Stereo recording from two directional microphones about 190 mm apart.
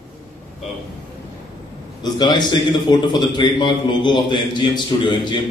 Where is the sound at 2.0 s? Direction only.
20° left (ahead or behind).